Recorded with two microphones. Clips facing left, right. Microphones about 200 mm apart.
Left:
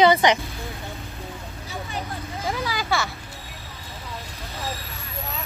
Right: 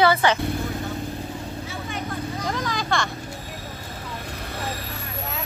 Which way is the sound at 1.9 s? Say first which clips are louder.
Right 4 dB; 30° left (ahead or behind).